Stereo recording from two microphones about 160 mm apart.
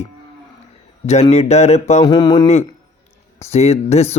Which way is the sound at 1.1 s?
45° left (ahead or behind).